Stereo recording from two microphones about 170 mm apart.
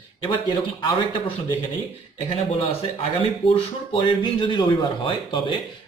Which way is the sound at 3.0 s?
35° left (ahead or behind).